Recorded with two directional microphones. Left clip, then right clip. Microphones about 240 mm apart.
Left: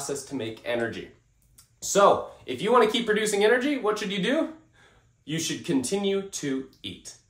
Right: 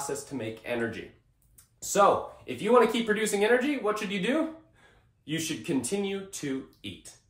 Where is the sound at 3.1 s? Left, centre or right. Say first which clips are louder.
Left 3 dB; centre.